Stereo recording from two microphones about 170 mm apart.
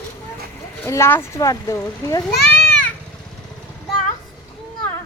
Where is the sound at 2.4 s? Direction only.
5° left (ahead or behind).